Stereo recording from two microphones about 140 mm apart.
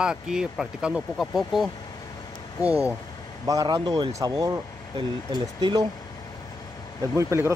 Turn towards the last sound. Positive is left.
turn(degrees=-20)  # may be behind; listen again after turning